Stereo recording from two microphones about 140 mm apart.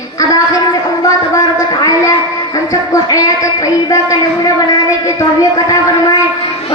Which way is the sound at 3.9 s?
25° left (ahead or behind).